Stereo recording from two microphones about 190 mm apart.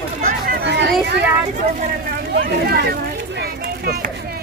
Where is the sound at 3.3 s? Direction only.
55° right (ahead or behind).